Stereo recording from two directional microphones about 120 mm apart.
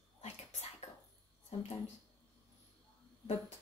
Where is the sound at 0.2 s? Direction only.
60° left (ahead or behind).